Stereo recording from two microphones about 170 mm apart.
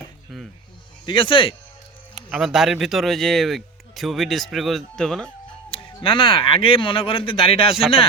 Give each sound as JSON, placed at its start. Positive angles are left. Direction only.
{"t": 0.3, "sound": "music", "side_deg": 0}
{"t": 1.0, "sound": "speech", "side_deg": 30}
{"t": 2.1, "sound": "speech", "side_deg": -5}
{"t": 5.7, "sound": "speech", "side_deg": 30}